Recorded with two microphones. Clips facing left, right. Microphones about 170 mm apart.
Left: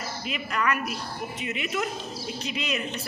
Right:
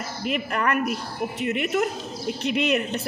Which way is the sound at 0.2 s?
55° right (ahead or behind).